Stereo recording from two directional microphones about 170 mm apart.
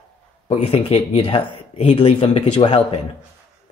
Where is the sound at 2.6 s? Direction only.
30° left (ahead or behind).